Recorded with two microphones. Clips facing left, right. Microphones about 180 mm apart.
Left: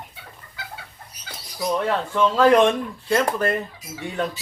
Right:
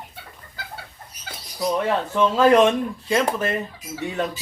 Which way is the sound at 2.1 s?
5° right (ahead or behind).